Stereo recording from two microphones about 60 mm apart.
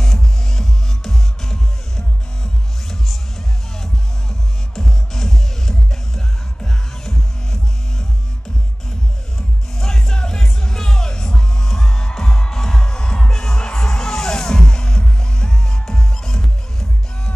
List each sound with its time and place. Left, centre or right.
0.0 s music: centre
9.8 s music: centre